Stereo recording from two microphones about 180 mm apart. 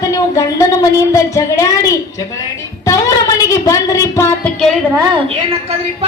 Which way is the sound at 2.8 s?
20° left (ahead or behind).